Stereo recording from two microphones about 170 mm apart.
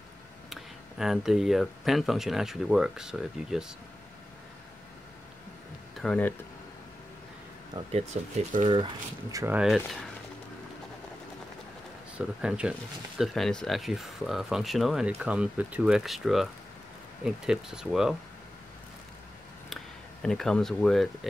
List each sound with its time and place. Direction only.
0.5 s speech: centre (ahead or behind)
5.9 s speech: 5° left (ahead or behind)
7.9 s speech: 40° right (ahead or behind)
8.7 s speech: 25° right (ahead or behind)
9.6 s speech: 5° right (ahead or behind)
12.2 s speech: 5° right (ahead or behind)
19.7 s speech: centre (ahead or behind)